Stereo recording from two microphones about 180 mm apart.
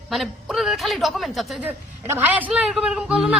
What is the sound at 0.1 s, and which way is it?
A woman's voice, centre (ahead or behind).